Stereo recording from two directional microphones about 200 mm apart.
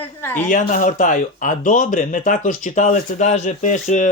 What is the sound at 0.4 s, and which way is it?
A man's voice, 40° left (ahead or behind).